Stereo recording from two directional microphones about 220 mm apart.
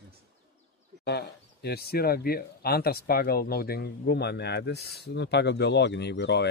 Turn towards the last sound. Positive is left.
turn(degrees=50)  # may be behind; listen again after turning